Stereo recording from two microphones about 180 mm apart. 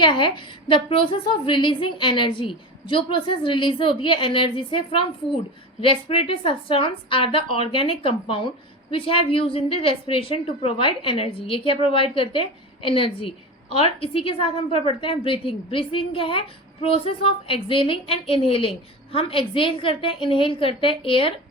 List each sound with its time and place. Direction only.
0.0 s a woman's voice: 25° left (ahead or behind)